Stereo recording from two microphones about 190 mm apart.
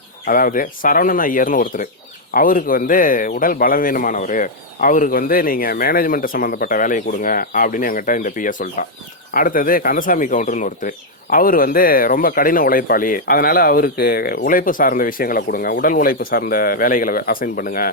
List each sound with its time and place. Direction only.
0.3 s speech: 45° left (ahead or behind)